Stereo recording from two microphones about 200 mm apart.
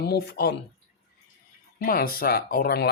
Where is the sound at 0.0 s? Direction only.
55° left (ahead or behind).